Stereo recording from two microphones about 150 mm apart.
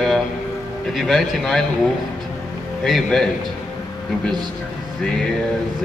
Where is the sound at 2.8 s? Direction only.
Centre (ahead or behind).